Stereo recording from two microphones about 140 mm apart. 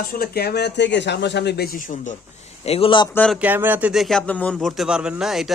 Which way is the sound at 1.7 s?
70° left (ahead or behind).